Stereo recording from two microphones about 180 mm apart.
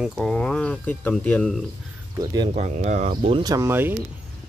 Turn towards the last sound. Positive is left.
turn(degrees=-15)  # may be behind; listen again after turning